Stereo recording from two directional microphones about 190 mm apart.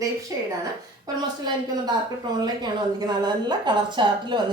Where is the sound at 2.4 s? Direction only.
20° right (ahead or behind).